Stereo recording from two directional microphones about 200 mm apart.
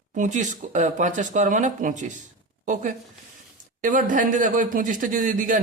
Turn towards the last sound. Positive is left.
turn(degrees=-40)  # may be behind; listen again after turning